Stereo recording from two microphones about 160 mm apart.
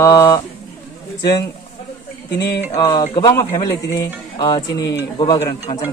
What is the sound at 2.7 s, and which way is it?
Speech, 20° left (ahead or behind).